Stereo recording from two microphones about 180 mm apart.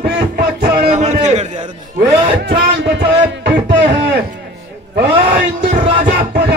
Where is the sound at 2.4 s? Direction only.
70° right (ahead or behind).